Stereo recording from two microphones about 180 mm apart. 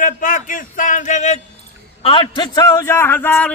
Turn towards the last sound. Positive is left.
turn(degrees=10)  # may be behind; listen again after turning